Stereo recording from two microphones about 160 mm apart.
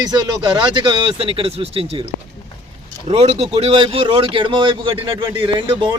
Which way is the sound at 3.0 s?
35° right (ahead or behind).